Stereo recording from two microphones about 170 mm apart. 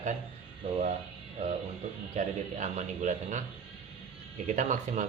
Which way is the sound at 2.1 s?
45° right (ahead or behind).